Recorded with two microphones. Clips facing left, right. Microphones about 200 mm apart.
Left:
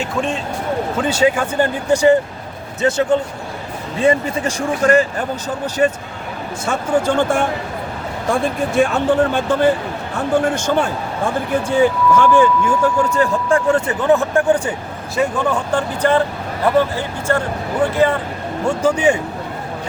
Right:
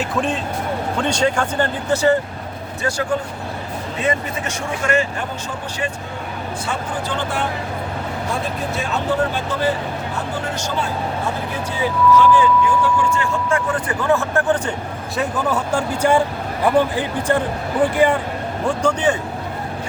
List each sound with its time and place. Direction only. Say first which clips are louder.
0.0 s speech: even; centre (ahead or behind); by 5.0 s 35° left (ahead or behind)
5.8 s speech: left 11 dB; 45° left (ahead or behind)
13.7 s speech: left 4 dB; 20° left (ahead or behind); by 18.2 s 15° right (ahead or behind)
18.6 s speech: left 3 dB; centre (ahead or behind)